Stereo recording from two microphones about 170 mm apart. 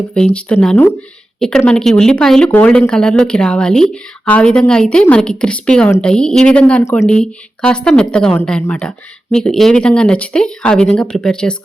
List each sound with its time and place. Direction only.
0.3 s speech: 5° left (ahead or behind)
6.8 s speech: 15° left (ahead or behind)
7.1 s speech: 5° left (ahead or behind)